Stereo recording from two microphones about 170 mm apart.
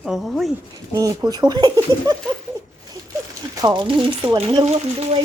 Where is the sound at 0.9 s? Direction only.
20° right (ahead or behind).